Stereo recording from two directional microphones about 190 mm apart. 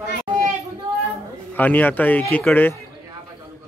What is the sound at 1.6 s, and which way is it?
Speech, 10° left (ahead or behind).